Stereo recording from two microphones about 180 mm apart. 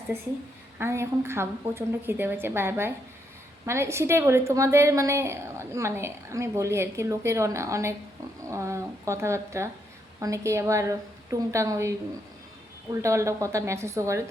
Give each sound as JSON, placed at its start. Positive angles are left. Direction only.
{"t": 0.8, "sound": "a woman's voice", "side_deg": -15}